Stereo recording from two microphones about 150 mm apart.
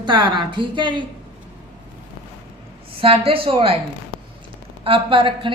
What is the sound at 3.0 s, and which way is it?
Speech, 40° right (ahead or behind).